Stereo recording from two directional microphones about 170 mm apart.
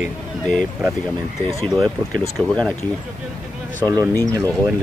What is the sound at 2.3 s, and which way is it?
Speech, centre (ahead or behind).